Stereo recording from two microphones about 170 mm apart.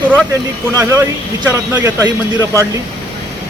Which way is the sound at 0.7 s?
15° right (ahead or behind).